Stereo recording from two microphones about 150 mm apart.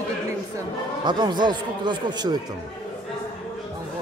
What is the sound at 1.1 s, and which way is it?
Speech, 30° right (ahead or behind).